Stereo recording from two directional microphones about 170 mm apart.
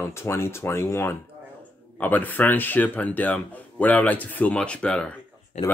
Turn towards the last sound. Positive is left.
turn(degrees=40)  # may be behind; listen again after turning